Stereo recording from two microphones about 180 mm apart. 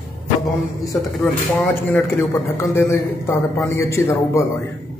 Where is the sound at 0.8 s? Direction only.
10° left (ahead or behind).